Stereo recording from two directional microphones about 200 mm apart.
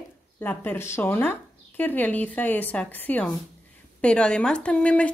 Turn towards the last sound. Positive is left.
turn(degrees=5)  # may be behind; listen again after turning